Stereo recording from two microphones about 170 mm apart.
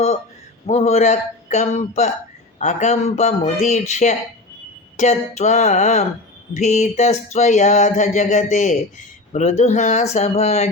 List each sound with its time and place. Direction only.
0.7 s speech: 40° left (ahead or behind)
2.6 s a sound: 45° left (ahead or behind)
9.3 s speech: 40° left (ahead or behind)